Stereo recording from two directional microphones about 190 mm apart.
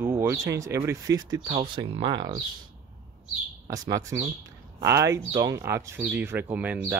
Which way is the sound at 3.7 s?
15° right (ahead or behind).